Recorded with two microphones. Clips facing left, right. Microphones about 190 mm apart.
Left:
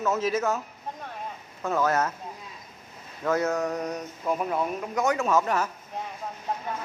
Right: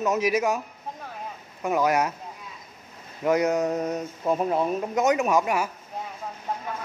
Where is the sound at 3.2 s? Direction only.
15° right (ahead or behind).